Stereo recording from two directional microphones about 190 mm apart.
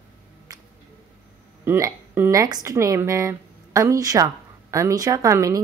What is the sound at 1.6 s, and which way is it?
Speech, 15° right (ahead or behind).